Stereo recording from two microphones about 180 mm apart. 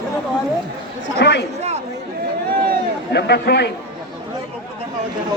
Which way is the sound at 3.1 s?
65° left (ahead or behind).